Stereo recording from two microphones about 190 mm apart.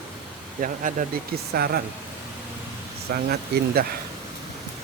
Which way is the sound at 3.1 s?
55° right (ahead or behind).